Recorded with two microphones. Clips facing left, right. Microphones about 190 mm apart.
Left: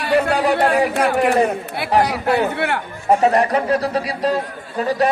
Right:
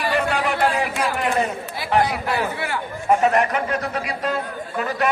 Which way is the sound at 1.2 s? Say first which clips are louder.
Left 6 dB; 65° left (ahead or behind).